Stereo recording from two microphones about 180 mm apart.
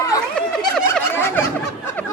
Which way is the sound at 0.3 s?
5° left (ahead or behind).